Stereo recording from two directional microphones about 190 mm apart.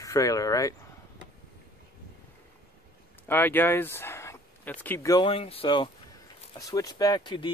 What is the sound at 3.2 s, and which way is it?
Speech, 10° left (ahead or behind).